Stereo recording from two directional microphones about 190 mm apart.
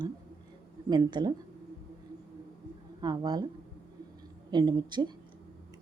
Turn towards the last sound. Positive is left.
turn(degrees=-20)  # may be behind; listen again after turning